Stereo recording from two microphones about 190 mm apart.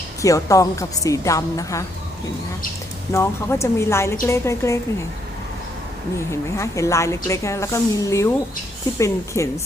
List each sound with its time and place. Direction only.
0.2 s a woman's voice: 15° left (ahead or behind)
3.1 s a woman's voice: 15° left (ahead or behind)
6.1 s a woman's voice: 15° left (ahead or behind)